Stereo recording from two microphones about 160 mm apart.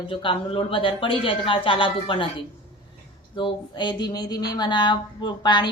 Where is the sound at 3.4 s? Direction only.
30° left (ahead or behind).